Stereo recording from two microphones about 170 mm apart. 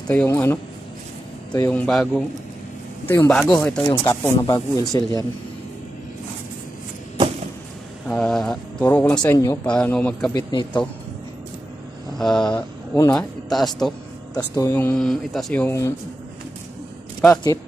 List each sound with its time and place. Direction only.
0.0 s speech: 10° left (ahead or behind)
1.7 s speech: 5° left (ahead or behind); by 5.2 s 25° left (ahead or behind)
8.1 s speech: 5° left (ahead or behind)
10.3 s speech: 25° left (ahead or behind)
12.2 s speech: 5° left (ahead or behind)
14.3 s speech: 20° left (ahead or behind)
14.7 s speech: 10° left (ahead or behind)
17.3 s speech: 20° left (ahead or behind)